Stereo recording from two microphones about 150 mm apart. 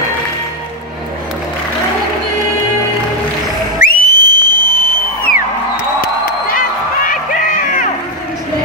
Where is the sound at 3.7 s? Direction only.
75° left (ahead or behind).